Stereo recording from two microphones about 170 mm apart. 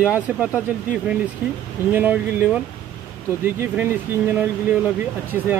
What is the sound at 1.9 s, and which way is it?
Speech, 10° right (ahead or behind).